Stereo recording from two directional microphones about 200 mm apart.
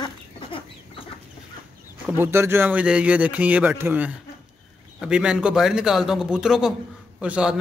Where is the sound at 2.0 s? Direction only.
10° right (ahead or behind).